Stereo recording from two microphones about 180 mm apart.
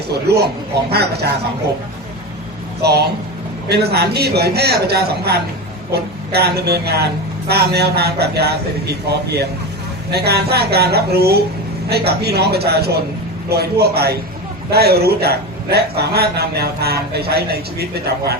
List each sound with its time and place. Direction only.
0.1 s a man's voice: 65° right (ahead or behind)
2.8 s a man's voice: 65° right (ahead or behind)